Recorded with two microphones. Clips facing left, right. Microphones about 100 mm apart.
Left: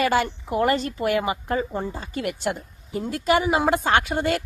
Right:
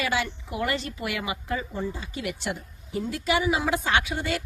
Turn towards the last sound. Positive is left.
turn(degrees=50)  # may be behind; listen again after turning